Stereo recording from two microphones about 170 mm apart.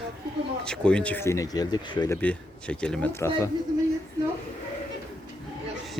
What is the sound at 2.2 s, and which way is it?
Speech, 5° left (ahead or behind).